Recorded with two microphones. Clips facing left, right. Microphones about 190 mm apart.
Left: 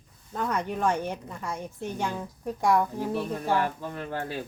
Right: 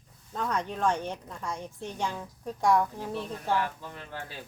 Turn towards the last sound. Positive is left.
turn(degrees=55)  # may be behind; listen again after turning